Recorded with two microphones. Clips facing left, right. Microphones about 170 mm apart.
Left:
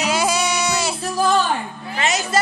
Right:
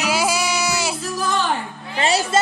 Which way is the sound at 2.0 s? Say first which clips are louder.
Right 2 dB; 30° right (ahead or behind).